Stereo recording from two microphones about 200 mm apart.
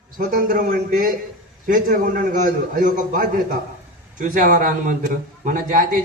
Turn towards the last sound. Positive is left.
turn(degrees=-45)  # may be behind; listen again after turning